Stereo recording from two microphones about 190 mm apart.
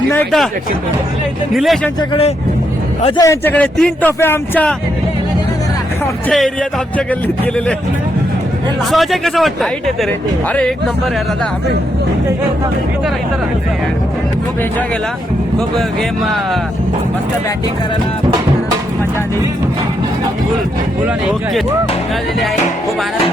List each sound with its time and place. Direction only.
1.5 s speech: centre (ahead or behind)
2.0 s speech: 30° left (ahead or behind)
3.2 s a man's voice: 15° left (ahead or behind)
6.2 s a man's voice: 5° left (ahead or behind)
8.9 s speech: centre (ahead or behind)